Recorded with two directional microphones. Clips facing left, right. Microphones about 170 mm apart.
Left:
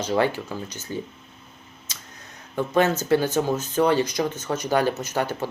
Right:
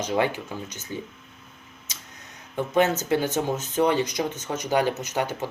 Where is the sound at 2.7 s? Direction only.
20° right (ahead or behind).